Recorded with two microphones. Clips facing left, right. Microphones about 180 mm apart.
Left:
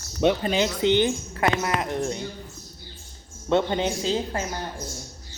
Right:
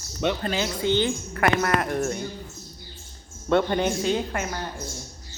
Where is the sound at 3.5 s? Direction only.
20° left (ahead or behind).